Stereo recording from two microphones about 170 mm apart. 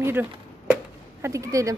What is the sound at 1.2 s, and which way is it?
Speech, 20° right (ahead or behind).